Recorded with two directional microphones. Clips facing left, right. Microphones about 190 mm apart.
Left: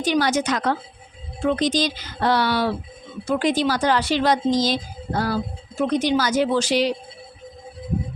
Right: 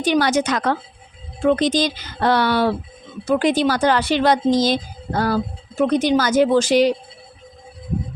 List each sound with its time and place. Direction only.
0.0 s speech: 60° right (ahead or behind)